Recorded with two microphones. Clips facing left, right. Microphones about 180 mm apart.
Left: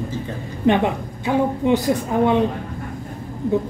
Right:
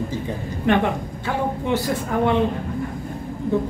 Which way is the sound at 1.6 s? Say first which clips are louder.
Left 4 dB; 15° left (ahead or behind).